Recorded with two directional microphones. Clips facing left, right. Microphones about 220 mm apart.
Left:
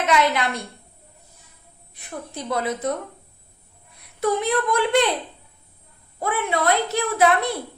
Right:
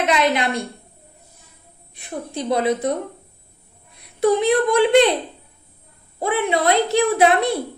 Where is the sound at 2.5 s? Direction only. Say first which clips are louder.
Right 5 dB; 15° right (ahead or behind).